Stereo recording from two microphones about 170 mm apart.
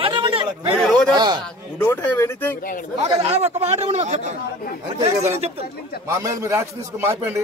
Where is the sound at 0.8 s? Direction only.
5° left (ahead or behind).